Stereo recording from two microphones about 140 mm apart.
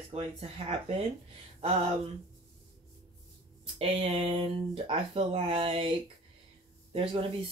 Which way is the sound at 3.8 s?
45° right (ahead or behind).